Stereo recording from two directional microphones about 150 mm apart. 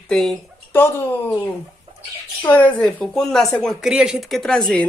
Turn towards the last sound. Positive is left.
turn(degrees=5)  # may be behind; listen again after turning